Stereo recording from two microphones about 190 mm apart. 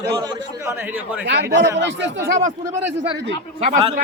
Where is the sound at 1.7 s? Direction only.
70° right (ahead or behind).